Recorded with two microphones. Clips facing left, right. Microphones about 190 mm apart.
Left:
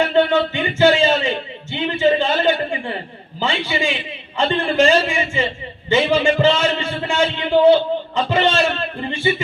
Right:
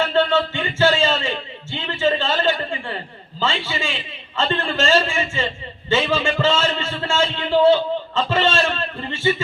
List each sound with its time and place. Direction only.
0.0 s a man's voice: 15° left (ahead or behind)
1.7 s a sound: 20° left (ahead or behind)
3.4 s a man's voice: 15° left (ahead or behind)